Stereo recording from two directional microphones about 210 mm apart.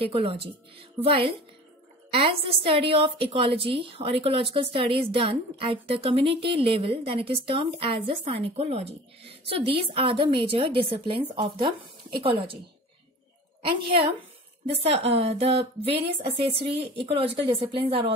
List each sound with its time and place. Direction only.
0.0 s a woman's voice: 25° right (ahead or behind)
14.7 s a woman's voice: 30° right (ahead or behind)